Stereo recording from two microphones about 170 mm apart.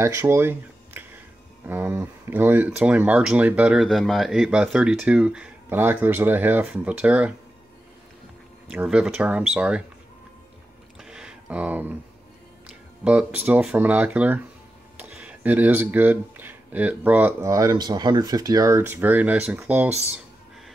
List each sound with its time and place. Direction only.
0.0 s speech: 15° right (ahead or behind)
8.6 s speech: 5° right (ahead or behind)
11.0 s a sound: 5° right (ahead or behind)
12.6 s speech: 5° right (ahead or behind)